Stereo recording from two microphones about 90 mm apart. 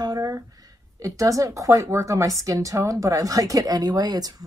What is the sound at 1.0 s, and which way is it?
A woman's voice, 40° right (ahead or behind).